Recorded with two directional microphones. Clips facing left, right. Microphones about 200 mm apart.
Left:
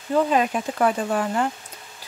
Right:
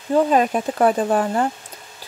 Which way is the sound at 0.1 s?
40° right (ahead or behind).